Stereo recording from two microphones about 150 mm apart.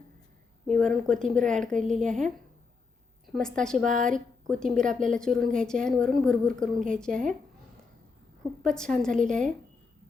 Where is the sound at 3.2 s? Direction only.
Centre (ahead or behind).